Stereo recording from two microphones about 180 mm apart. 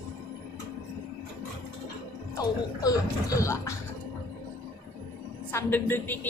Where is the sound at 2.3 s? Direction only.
20° left (ahead or behind).